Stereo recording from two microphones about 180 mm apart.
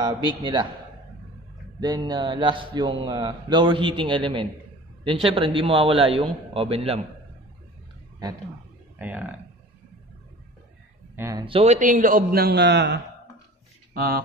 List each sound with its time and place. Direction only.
0.0 s a man's voice: 25° right (ahead or behind)
1.8 s a man's voice: 25° right (ahead or behind)
8.9 s speech: 10° right (ahead or behind)
11.1 s speech: 15° right (ahead or behind)
11.4 s a man's voice: 35° right (ahead or behind); by 13.0 s 75° right (ahead or behind)
13.9 s speech: 60° right (ahead or behind)